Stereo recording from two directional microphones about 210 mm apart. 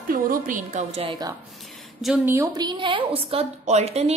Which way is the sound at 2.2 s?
15° right (ahead or behind).